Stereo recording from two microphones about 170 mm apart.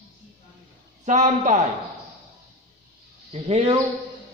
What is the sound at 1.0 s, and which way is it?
Speech, 45° right (ahead or behind).